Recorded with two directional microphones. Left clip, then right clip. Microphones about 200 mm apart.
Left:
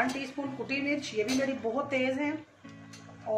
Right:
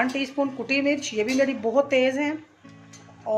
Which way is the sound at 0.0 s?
45° right (ahead or behind).